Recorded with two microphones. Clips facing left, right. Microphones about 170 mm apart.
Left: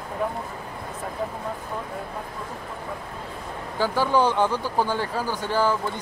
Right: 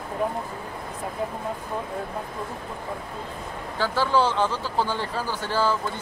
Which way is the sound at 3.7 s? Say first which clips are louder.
Left 1 dB; 15° left (ahead or behind).